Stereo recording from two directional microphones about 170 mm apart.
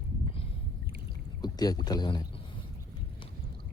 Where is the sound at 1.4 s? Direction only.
25° left (ahead or behind).